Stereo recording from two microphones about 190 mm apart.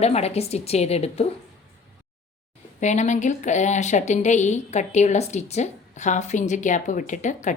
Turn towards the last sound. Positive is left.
turn(degrees=40)  # may be behind; listen again after turning